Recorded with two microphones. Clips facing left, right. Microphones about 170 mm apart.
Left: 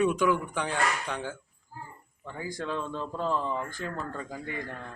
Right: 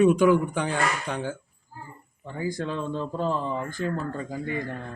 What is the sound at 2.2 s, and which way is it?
Speech, 30° right (ahead or behind).